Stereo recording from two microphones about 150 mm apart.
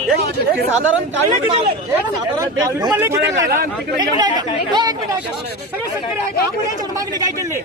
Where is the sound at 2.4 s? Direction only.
20° right (ahead or behind).